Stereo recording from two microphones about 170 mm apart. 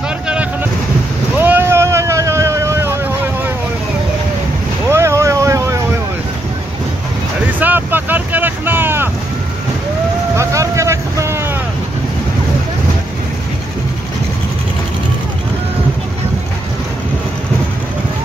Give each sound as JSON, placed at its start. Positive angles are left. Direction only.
{"t": 1.4, "sound": "vehicle", "side_deg": -15}
{"t": 4.8, "sound": "vehicle", "side_deg": -15}
{"t": 7.5, "sound": "wind noise", "side_deg": -10}
{"t": 10.3, "sound": "vehicle", "side_deg": -15}